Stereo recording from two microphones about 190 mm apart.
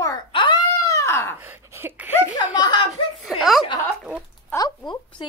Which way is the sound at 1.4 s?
10° right (ahead or behind).